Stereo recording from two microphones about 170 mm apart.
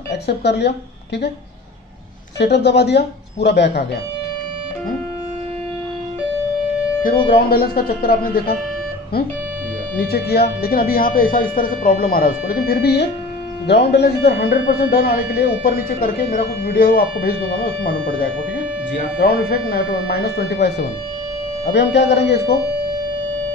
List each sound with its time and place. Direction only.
0.1 s a woman's voice: 80° left
2.3 s speech: 80° left
7.4 s speech: 65° left (ahead or behind)
9.9 s speech: 65° left (ahead or behind)
14.8 s speech: 60° left (ahead or behind)
21.6 s speech: 90° left